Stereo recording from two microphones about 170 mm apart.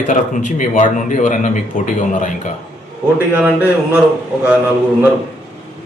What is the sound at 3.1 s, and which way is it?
Speech, 10° right (ahead or behind).